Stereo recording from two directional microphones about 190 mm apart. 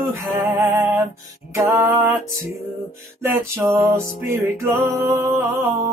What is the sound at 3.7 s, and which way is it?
Music, 15° right (ahead or behind).